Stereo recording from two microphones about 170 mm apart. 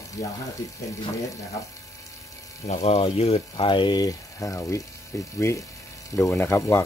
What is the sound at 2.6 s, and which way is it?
Speech, 40° left (ahead or behind).